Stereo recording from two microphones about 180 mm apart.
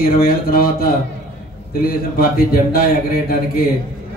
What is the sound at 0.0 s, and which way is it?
A man's voice, 55° left (ahead or behind).